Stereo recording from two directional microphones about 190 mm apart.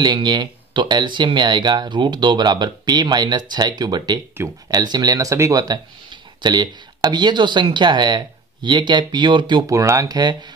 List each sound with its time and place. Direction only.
0.0 s speech: 25° right (ahead or behind)